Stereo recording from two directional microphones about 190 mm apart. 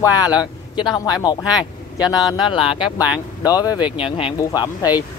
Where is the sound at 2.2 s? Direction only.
25° left (ahead or behind).